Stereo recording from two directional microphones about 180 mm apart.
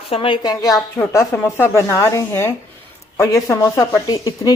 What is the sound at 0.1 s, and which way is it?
A woman's voice, 30° left (ahead or behind).